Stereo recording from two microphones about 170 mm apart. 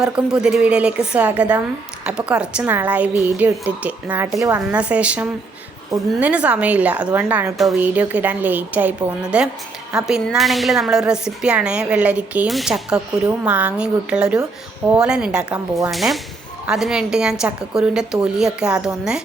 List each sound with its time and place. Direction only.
0.0 s a woman's voice: 5° right (ahead or behind)